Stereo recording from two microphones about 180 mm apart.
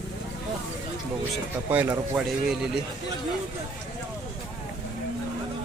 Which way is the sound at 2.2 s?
Centre (ahead or behind).